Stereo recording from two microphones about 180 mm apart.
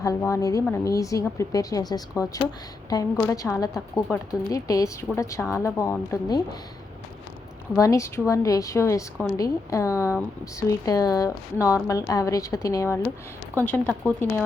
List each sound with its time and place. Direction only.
0.0 s a woman's voice: 15° left (ahead or behind)
7.8 s a woman's voice: 15° left (ahead or behind)